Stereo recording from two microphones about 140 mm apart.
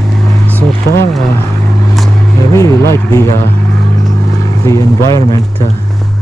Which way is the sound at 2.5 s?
20° left (ahead or behind).